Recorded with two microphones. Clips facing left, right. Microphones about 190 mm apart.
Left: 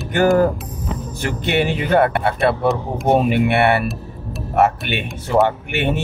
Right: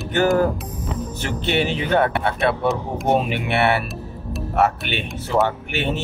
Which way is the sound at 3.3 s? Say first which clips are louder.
Left 4 dB; 55° left (ahead or behind).